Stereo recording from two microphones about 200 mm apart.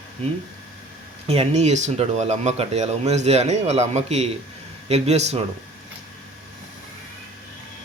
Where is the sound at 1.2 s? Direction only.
30° right (ahead or behind).